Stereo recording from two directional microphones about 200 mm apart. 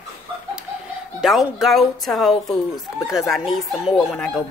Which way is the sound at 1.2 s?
Centre (ahead or behind).